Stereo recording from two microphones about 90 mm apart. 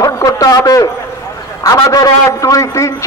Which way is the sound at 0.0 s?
40° left (ahead or behind).